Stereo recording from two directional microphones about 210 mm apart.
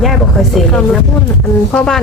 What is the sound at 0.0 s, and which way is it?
Speech, centre (ahead or behind).